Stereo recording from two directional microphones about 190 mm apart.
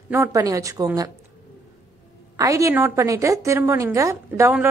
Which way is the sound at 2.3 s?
15° right (ahead or behind).